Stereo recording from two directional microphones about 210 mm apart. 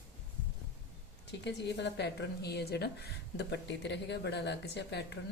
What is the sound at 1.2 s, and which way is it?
A woman's voice, 55° left (ahead or behind).